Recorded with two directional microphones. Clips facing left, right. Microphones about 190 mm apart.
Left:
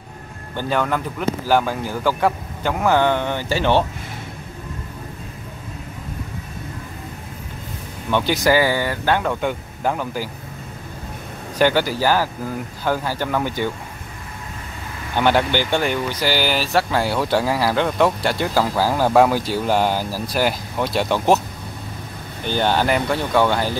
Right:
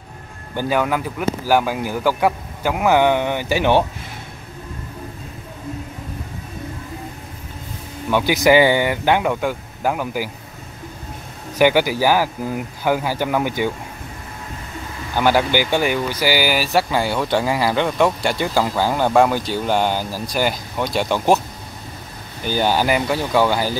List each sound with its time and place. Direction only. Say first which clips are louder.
0.6 s a man's voice: right 2 dB; 10° right (ahead or behind)
8.1 s a man's voice: right 3 dB; 10° right (ahead or behind)
11.5 s a man's voice: right 2 dB; 15° right (ahead or behind)
15.1 s speech: right 1 dB; 5° right (ahead or behind)
22.5 s speech: right 1 dB; 5° right (ahead or behind)